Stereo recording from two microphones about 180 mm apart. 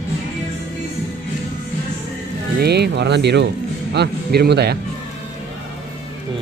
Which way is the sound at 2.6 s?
65° right (ahead or behind).